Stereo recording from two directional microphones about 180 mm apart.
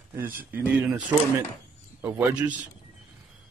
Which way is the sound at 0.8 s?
5° right (ahead or behind).